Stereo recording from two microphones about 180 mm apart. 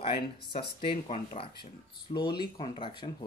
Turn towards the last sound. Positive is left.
turn(degrees=25)  # may be behind; listen again after turning